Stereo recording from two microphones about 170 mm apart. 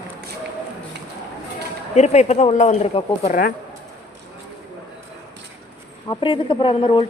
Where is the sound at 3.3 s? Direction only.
55° left (ahead or behind).